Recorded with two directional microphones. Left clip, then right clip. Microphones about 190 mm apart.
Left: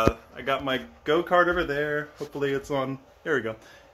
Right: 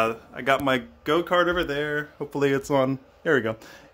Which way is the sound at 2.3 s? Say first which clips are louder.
Right 5 dB; 55° right (ahead or behind).